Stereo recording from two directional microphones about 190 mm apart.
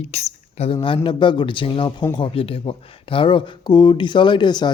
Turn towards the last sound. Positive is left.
turn(degrees=25)  # may be behind; listen again after turning